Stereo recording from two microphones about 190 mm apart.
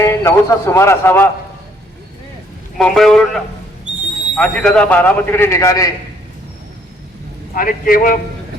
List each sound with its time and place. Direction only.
0.0 s a man's voice: 15° left (ahead or behind)
2.7 s a man's voice: centre (ahead or behind)
7.5 s a man's voice: 45° left (ahead or behind)